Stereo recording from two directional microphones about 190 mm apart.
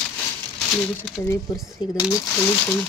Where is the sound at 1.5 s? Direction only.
Centre (ahead or behind).